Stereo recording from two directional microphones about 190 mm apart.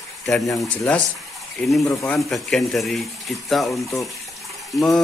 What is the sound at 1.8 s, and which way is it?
Speech, 15° left (ahead or behind).